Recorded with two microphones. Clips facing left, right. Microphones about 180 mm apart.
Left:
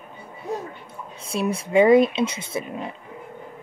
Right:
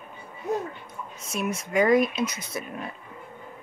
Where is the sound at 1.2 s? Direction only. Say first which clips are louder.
Left 5 dB; 30° left (ahead or behind).